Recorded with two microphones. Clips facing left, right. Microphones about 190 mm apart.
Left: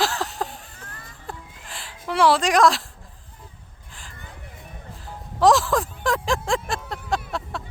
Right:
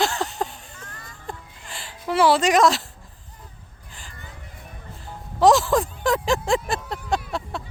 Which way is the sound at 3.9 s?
Centre (ahead or behind).